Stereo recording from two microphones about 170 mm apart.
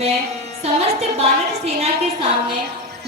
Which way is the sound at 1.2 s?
40° right (ahead or behind).